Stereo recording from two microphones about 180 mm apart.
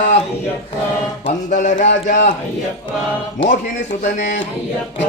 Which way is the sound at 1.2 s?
45° left (ahead or behind).